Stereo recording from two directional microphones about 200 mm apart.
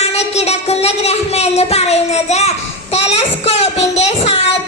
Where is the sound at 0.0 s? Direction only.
30° left (ahead or behind).